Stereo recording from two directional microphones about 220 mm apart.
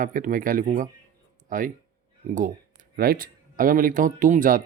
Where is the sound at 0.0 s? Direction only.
40° right (ahead or behind).